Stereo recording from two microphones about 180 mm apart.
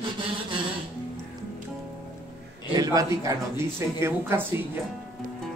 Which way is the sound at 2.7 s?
20° right (ahead or behind).